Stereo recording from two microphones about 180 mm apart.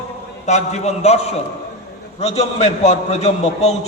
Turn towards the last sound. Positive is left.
turn(degrees=40)  # may be behind; listen again after turning